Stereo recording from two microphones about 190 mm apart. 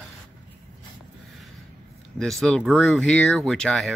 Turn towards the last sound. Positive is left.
turn(degrees=5)  # may be behind; listen again after turning